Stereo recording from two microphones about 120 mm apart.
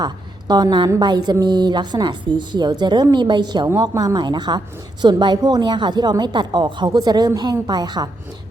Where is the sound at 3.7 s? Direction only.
25° right (ahead or behind).